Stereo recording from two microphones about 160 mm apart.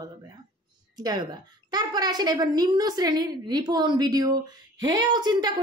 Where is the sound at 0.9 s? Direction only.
25° right (ahead or behind).